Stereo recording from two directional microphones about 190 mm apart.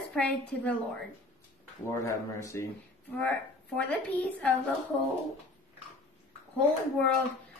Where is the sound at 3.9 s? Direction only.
10° left (ahead or behind).